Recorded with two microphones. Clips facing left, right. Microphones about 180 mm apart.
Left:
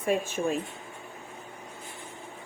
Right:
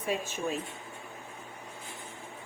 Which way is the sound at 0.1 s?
50° left (ahead or behind).